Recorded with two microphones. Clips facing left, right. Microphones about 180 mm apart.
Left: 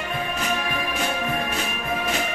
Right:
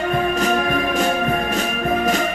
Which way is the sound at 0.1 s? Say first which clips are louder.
Right 8 dB; 45° right (ahead or behind).